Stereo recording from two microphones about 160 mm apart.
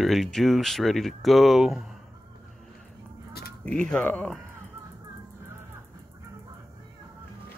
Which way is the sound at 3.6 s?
5° left (ahead or behind).